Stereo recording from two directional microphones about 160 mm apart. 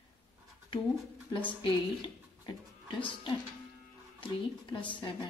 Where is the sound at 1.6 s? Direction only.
30° left (ahead or behind).